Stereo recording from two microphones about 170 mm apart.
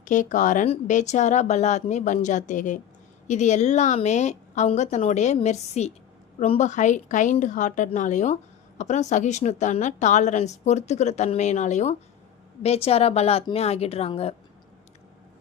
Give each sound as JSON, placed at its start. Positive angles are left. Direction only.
{"t": 0.0, "sound": "a woman's voice", "side_deg": 45}